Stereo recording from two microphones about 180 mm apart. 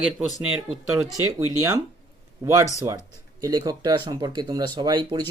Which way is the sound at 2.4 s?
15° right (ahead or behind).